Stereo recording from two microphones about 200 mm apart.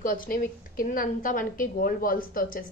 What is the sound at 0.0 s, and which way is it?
A woman's voice, 45° left (ahead or behind).